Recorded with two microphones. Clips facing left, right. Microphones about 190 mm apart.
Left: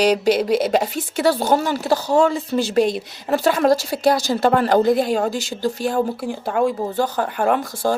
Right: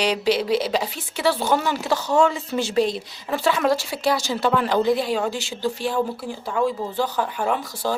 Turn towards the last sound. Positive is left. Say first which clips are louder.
# left 5 dB
turn(degrees=50)  # may be behind; listen again after turning